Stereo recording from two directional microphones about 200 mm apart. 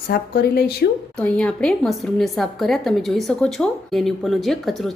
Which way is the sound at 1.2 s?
5° left (ahead or behind).